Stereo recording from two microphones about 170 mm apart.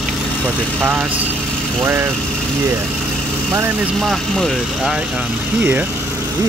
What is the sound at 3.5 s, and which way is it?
Speech, 10° right (ahead or behind).